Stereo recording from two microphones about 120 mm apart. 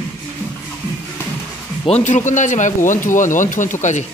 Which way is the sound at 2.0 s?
90° left.